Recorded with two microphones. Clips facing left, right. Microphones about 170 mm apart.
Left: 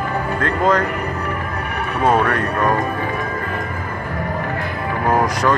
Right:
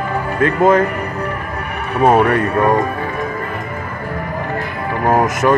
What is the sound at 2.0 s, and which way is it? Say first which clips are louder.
Speech: right 5 dB; 20° right (ahead or behind).